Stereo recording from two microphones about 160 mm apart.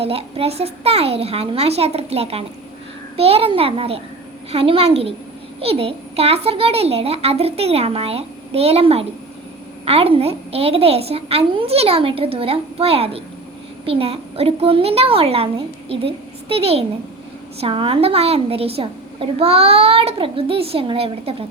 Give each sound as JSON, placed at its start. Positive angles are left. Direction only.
{"t": 0.0, "sound": "a woman's voice", "side_deg": -40}